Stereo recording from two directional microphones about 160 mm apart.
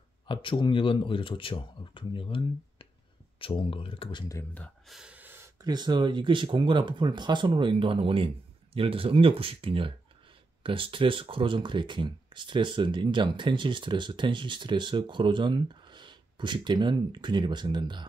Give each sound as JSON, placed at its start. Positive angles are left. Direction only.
{"t": 0.3, "sound": "speech", "side_deg": 30}
{"t": 4.8, "sound": "speech", "side_deg": -5}